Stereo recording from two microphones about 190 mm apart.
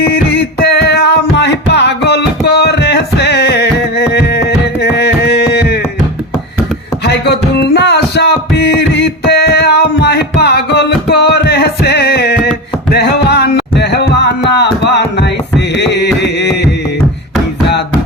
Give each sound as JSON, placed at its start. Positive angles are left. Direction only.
{"t": 0.1, "sound": "music", "side_deg": 55}
{"t": 7.0, "sound": "music", "side_deg": 60}
{"t": 12.9, "sound": "a sound", "side_deg": 60}
{"t": 16.2, "sound": "music", "side_deg": 65}